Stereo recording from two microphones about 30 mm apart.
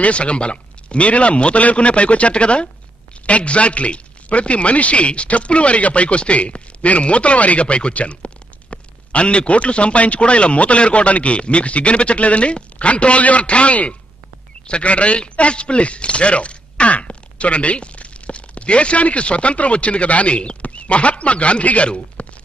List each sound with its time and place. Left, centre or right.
0.0 s a man's voice: left
7.6 s speech: left
7.9 s a man's voice: left
22.2 s a sound: left